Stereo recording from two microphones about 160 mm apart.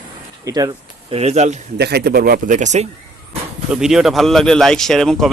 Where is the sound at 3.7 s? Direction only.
5° right (ahead or behind).